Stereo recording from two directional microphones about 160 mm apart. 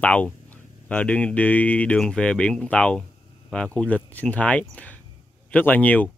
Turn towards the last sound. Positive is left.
turn(degrees=10)  # may be behind; listen again after turning